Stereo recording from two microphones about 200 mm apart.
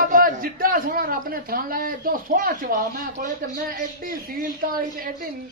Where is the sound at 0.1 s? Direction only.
45° right (ahead or behind).